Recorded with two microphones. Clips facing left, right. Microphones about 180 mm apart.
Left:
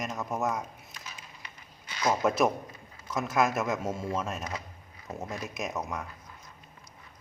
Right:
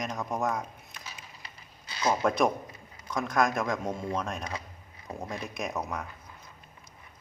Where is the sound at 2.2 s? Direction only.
5° left (ahead or behind).